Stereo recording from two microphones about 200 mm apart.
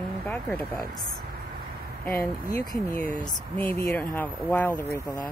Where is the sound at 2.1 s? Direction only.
45° left (ahead or behind).